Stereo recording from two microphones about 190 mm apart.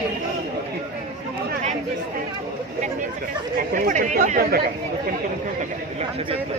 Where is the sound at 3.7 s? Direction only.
45° right (ahead or behind).